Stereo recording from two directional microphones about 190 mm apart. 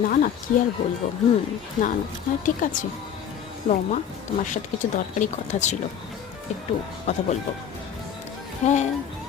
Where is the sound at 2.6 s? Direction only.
45° left (ahead or behind).